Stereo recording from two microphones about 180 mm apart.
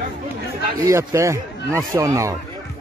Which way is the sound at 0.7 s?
15° right (ahead or behind).